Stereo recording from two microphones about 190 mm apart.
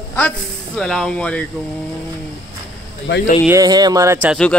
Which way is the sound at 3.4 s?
20° right (ahead or behind).